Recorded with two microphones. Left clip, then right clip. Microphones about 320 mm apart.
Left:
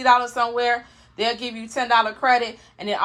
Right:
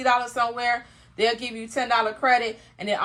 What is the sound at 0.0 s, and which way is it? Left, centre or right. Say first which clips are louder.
A woman's voice: left 4 dB; centre.